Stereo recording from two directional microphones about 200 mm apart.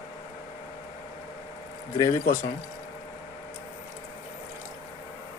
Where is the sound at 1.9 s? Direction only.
15° left (ahead or behind).